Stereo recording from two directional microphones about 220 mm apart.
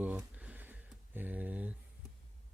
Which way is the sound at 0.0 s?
5° right (ahead or behind).